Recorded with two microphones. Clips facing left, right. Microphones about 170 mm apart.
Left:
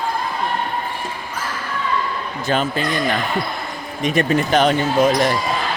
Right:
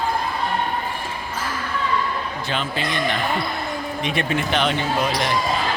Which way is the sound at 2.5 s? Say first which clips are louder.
Left 6 dB; 40° left (ahead or behind).